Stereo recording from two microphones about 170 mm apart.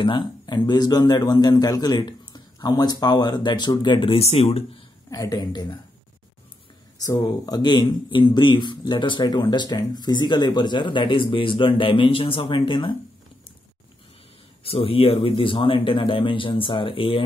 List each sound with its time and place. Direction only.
0.0 s speech: 25° left (ahead or behind)
5.1 s speech: 20° left (ahead or behind)
7.0 s speech: 20° left (ahead or behind)
14.6 s a man's voice: 35° left (ahead or behind)